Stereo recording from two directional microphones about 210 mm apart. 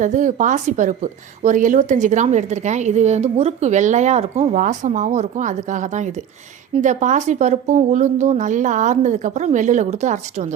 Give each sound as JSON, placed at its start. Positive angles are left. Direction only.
{"t": 0.0, "sound": "a woman's voice", "side_deg": -35}